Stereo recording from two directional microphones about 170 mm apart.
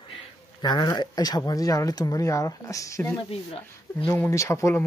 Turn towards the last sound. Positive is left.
turn(degrees=15)  # may be behind; listen again after turning